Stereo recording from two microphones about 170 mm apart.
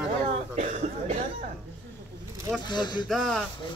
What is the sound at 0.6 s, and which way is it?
Speech, 45° right (ahead or behind).